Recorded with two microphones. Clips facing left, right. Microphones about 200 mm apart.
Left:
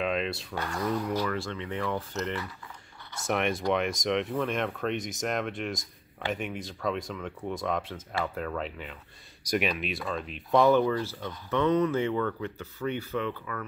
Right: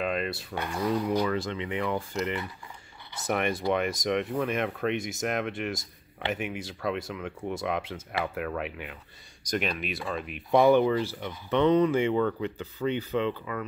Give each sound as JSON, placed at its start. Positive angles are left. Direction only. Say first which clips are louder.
{"t": 0.0, "sound": "a sound", "louder": "even", "side_deg": 0}
{"t": 0.5, "sound": "speech", "louder": "right 5 dB", "side_deg": -15}
{"t": 3.2, "sound": "speech", "louder": "even", "side_deg": 0}
{"t": 9.4, "sound": "speech", "louder": "left 2 dB", "side_deg": 5}
{"t": 10.5, "sound": "speech", "louder": "right 2 dB", "side_deg": -15}